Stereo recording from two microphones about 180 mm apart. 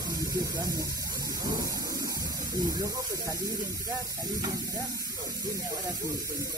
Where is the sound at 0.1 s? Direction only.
20° right (ahead or behind).